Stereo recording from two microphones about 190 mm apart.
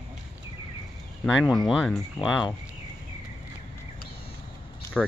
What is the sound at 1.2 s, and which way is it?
Speech, centre (ahead or behind).